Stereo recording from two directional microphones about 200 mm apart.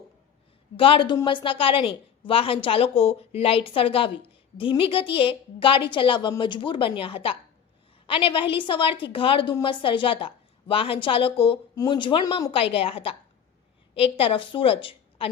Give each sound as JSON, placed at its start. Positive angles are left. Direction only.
{"t": 0.8, "sound": "a woman's voice", "side_deg": 25}